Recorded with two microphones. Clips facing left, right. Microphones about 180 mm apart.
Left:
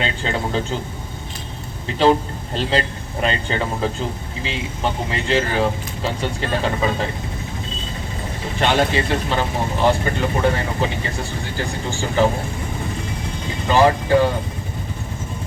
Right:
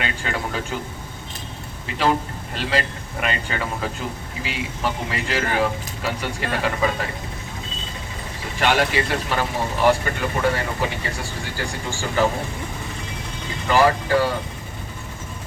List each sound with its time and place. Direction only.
0.0 s speech: 25° left (ahead or behind)
2.6 s speech: 30° left (ahead or behind)
8.5 s speech: 25° left (ahead or behind)
13.7 s speech: 20° left (ahead or behind)